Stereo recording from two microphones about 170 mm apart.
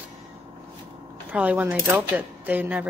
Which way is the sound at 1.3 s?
10° right (ahead or behind).